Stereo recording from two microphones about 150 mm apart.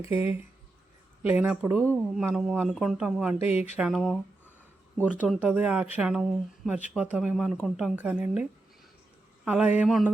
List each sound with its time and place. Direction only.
0.0 s a man's voice: 15° right (ahead or behind)
3.5 s speech: 45° left (ahead or behind)
3.8 s a man's voice: centre (ahead or behind)
5.3 s a man's voice: 10° right (ahead or behind)
7.9 s speech: 10° right (ahead or behind)